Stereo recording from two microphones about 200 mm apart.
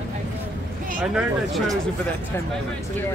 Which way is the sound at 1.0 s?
5° right (ahead or behind).